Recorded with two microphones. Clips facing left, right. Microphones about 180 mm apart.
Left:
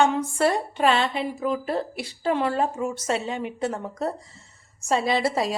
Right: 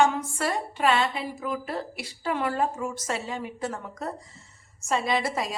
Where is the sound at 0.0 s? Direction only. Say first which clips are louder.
Left 3 dB; 30° left (ahead or behind).